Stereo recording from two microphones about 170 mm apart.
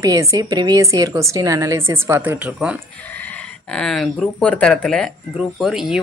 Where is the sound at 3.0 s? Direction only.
10° left (ahead or behind).